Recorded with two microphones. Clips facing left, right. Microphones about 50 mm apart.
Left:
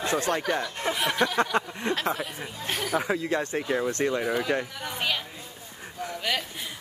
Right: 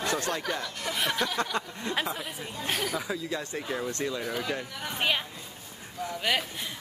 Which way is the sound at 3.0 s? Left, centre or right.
Left.